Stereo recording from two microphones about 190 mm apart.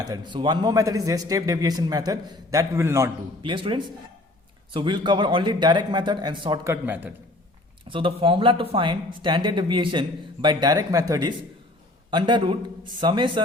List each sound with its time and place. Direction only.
0.0 s speech: 20° right (ahead or behind)
3.4 s speech: 25° right (ahead or behind)
6.8 s a man's voice: 10° right (ahead or behind)
7.9 s speech: 25° right (ahead or behind)